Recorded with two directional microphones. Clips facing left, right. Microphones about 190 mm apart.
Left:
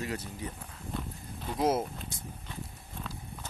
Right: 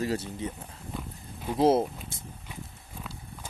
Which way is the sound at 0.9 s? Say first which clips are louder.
Left 1 dB; 10° right (ahead or behind).